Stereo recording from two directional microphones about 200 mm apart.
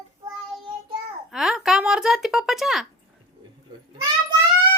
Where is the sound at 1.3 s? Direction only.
Centre (ahead or behind).